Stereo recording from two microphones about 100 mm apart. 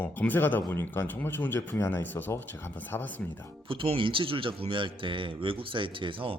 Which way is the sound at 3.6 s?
65° right (ahead or behind).